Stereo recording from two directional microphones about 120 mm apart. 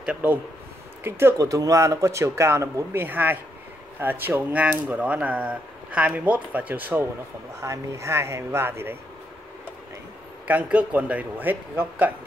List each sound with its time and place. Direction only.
0.0 s speech: 10° right (ahead or behind)
1.0 s speech: 25° right (ahead or behind)
7.6 s speech: 25° right (ahead or behind)
10.4 s speech: 15° right (ahead or behind)